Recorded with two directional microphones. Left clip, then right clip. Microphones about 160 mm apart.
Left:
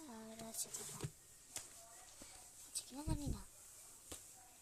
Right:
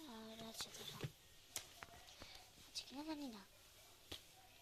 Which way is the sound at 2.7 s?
15° left (ahead or behind).